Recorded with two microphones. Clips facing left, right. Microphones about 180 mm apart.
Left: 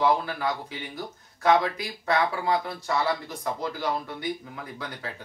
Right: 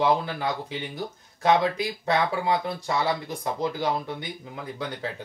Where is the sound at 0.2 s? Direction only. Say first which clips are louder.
Right 1 dB; 25° right (ahead or behind).